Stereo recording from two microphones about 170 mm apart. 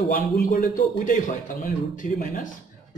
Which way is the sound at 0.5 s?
55° left (ahead or behind).